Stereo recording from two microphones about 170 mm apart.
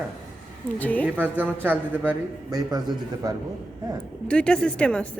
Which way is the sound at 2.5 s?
20° right (ahead or behind).